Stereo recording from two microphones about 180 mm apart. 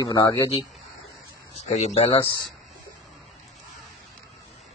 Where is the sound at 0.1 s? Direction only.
20° left (ahead or behind).